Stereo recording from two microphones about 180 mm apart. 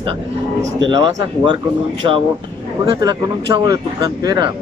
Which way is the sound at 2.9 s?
25° right (ahead or behind).